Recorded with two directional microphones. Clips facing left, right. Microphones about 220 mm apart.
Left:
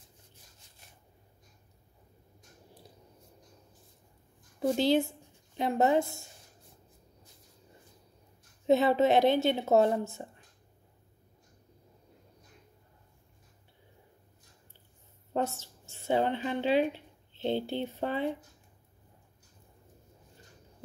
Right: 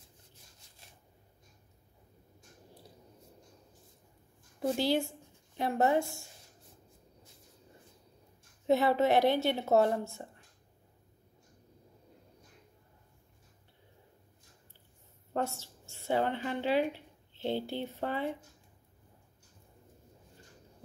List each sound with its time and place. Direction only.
4.6 s a woman's voice: 20° left (ahead or behind)
8.6 s a woman's voice: 20° left (ahead or behind)
15.3 s speech: 20° left (ahead or behind)